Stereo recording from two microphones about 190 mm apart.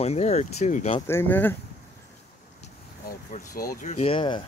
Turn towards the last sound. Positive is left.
turn(degrees=25)  # may be behind; listen again after turning